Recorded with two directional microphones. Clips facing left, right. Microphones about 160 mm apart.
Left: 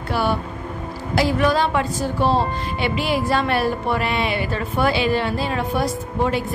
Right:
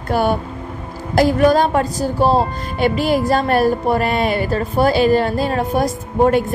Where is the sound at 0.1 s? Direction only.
45° right (ahead or behind).